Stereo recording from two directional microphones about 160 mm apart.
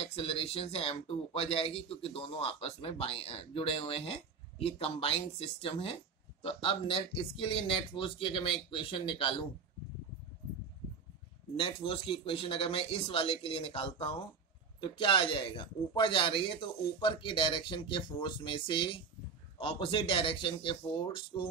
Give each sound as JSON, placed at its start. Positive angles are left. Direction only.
{"t": 0.0, "sound": "speech", "side_deg": 35}
{"t": 11.5, "sound": "speech", "side_deg": 35}